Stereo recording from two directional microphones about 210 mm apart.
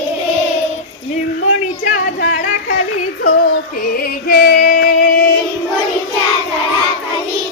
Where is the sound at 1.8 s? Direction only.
35° left (ahead or behind).